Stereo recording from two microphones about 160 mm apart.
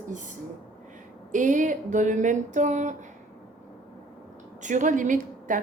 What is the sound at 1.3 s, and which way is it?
A woman's voice, 55° right (ahead or behind).